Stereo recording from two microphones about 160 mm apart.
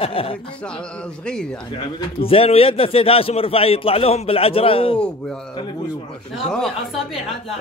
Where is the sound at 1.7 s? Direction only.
35° left (ahead or behind).